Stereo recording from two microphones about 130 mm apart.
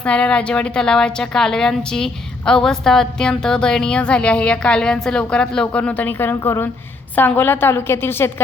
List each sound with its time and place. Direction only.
0.0 s a woman's voice: 10° left (ahead or behind)